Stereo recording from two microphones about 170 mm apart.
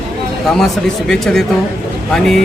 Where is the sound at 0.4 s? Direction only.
Centre (ahead or behind).